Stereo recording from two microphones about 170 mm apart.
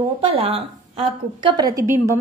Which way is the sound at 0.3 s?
35° right (ahead or behind).